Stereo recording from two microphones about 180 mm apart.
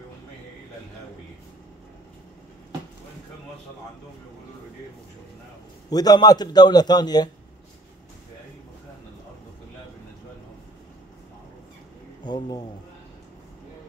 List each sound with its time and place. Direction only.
5.9 s a man's voice: 20° left (ahead or behind)
12.2 s speech: 25° left (ahead or behind)